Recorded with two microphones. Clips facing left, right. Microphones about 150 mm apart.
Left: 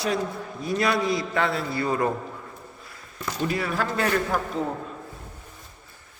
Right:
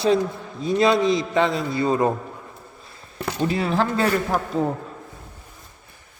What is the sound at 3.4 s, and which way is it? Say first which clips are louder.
Speech: right 5 dB; 25° right (ahead or behind).